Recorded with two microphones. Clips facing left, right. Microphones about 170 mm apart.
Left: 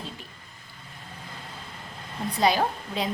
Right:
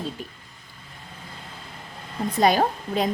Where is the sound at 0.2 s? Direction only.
45° right (ahead or behind).